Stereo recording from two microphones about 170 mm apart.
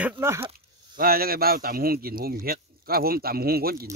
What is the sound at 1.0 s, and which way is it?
A man's voice, 60° right (ahead or behind).